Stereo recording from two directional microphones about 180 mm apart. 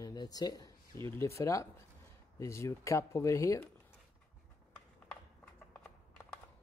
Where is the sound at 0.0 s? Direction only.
20° left (ahead or behind).